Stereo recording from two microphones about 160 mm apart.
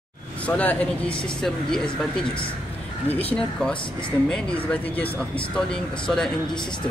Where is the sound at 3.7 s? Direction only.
30° left (ahead or behind).